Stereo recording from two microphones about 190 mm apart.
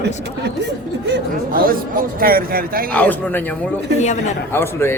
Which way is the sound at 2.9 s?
5° left (ahead or behind).